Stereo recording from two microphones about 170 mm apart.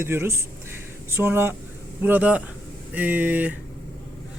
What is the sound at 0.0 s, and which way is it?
Speech, 15° right (ahead or behind).